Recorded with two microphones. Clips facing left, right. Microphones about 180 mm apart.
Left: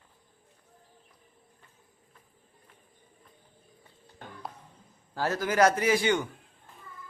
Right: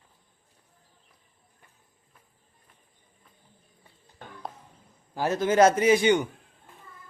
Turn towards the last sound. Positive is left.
turn(degrees=-20)  # may be behind; listen again after turning